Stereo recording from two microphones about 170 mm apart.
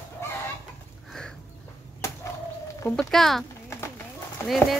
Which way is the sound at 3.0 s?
Centre (ahead or behind).